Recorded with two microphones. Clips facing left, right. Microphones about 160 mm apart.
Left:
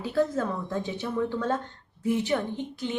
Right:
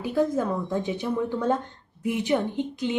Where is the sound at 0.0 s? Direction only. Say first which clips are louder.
Right 2 dB; 15° right (ahead or behind).